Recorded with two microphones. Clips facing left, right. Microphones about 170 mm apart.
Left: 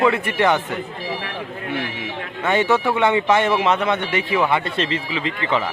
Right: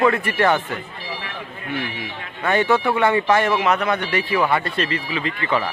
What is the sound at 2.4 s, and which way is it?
Speech, 20° left (ahead or behind).